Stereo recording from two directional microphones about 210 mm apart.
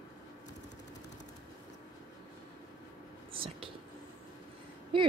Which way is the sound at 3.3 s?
25° right (ahead or behind).